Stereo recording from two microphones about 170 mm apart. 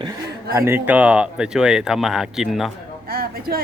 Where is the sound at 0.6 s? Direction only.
15° right (ahead or behind).